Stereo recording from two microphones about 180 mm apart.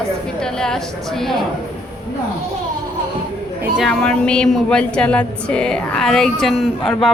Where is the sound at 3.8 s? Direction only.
5° left (ahead or behind).